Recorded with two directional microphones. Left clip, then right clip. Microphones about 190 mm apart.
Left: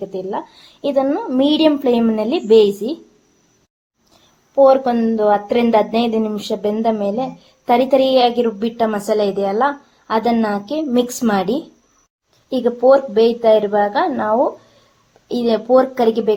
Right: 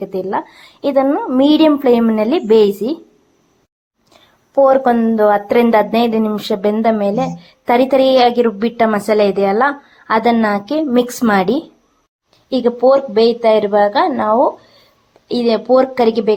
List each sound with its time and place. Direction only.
0.0 s speech: 15° right (ahead or behind)
4.6 s speech: 20° right (ahead or behind)